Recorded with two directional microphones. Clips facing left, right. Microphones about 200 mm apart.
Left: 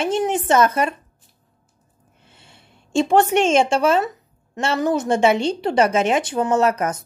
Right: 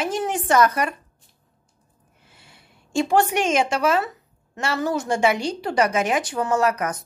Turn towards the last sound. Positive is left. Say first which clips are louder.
# left 3 dB
turn(degrees=25)  # may be behind; listen again after turning